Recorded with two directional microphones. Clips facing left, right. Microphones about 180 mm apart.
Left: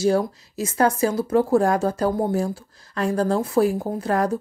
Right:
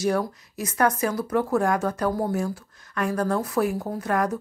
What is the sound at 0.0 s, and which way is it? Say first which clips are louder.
Speech: left 4 dB; 25° left (ahead or behind).